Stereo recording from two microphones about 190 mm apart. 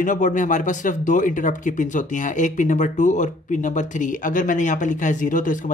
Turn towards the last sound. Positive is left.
turn(degrees=45)  # may be behind; listen again after turning